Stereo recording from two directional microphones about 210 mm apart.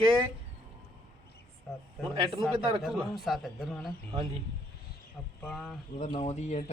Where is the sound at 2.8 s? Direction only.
Centre (ahead or behind).